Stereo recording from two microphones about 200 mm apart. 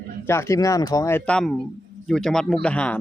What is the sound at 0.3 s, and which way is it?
A man's voice, 15° left (ahead or behind).